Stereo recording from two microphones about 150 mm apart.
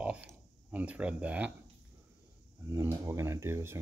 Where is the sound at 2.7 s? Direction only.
15° right (ahead or behind).